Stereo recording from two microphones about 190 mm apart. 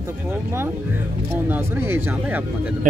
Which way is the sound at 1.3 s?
10° right (ahead or behind).